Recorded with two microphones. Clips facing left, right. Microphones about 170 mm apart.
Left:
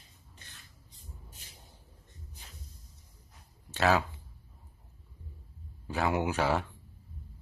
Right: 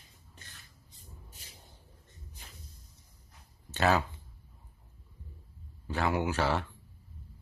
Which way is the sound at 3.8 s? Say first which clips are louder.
Left 1 dB; centre (ahead or behind).